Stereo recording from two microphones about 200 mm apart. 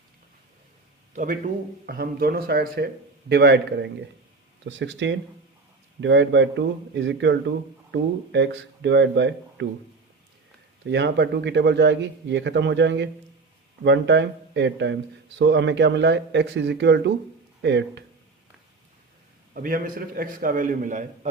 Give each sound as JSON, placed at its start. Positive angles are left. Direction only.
{"t": 1.1, "sound": "a man's voice", "side_deg": -40}
{"t": 10.8, "sound": "a man's voice", "side_deg": -60}
{"t": 19.6, "sound": "a man's voice", "side_deg": -45}